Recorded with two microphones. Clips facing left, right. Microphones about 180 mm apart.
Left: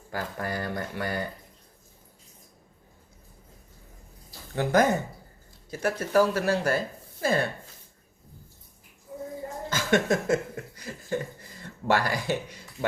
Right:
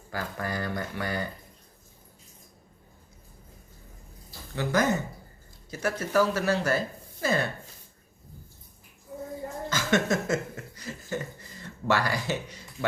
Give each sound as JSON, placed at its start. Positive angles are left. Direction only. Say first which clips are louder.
{"t": 0.1, "sound": "speech", "louder": "left 1 dB", "side_deg": 45}
{"t": 4.5, "sound": "speech", "louder": "left 3 dB", "side_deg": 55}
{"t": 9.6, "sound": "a sound", "louder": "left 2 dB", "side_deg": 55}
{"t": 11.9, "sound": "speech", "louder": "left 1 dB", "side_deg": 50}